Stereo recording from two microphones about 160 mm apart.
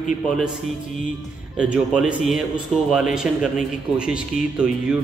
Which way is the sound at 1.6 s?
5° right (ahead or behind).